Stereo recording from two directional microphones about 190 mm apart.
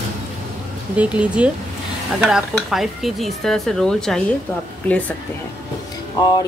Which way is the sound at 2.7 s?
Centre (ahead or behind).